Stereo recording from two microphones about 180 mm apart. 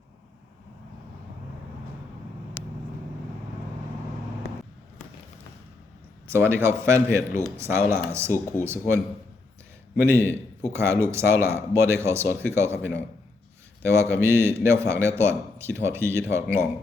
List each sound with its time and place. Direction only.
6.3 s speech: 15° right (ahead or behind)
10.1 s speech: 15° right (ahead or behind)
13.8 s speech: 15° right (ahead or behind)